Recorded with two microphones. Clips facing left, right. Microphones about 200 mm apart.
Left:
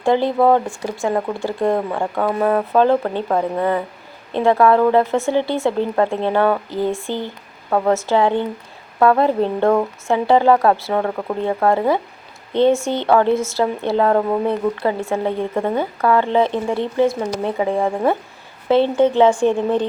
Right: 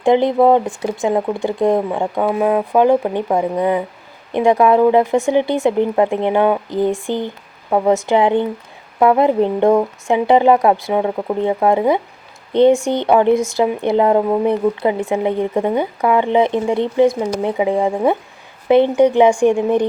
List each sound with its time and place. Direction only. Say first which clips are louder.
0.0 s speech: right 3 dB; 20° right (ahead or behind)